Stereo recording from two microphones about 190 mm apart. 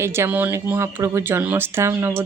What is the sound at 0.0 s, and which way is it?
Speech, 15° right (ahead or behind).